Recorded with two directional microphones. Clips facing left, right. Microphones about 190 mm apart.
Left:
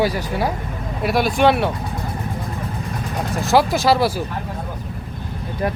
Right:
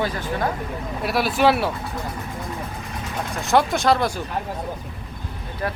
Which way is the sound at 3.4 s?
Centre (ahead or behind).